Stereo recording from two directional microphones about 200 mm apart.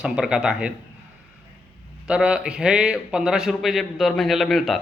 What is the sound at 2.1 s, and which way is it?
A man's voice, 5° right (ahead or behind).